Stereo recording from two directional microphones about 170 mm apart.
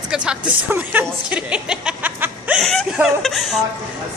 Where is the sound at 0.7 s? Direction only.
10° right (ahead or behind).